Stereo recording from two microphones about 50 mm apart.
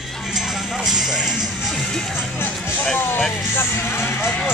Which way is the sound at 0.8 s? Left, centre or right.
Centre.